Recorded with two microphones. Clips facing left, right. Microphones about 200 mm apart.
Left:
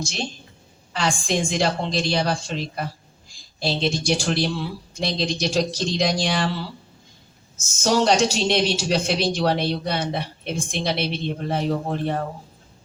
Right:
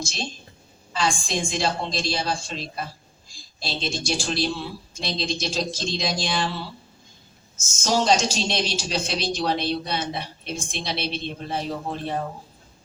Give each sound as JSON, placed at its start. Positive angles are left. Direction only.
{"t": 1.0, "sound": "speech", "side_deg": 65}
{"t": 7.8, "sound": "a woman's voice", "side_deg": 60}